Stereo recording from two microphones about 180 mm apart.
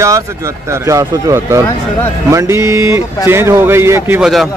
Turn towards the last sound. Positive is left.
turn(degrees=0)  # may be behind; listen again after turning